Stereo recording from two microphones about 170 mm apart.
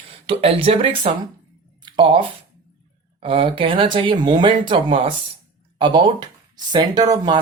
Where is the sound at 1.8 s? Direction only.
30° right (ahead or behind).